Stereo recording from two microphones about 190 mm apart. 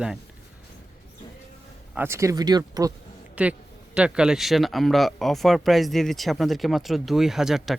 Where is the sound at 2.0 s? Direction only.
15° right (ahead or behind).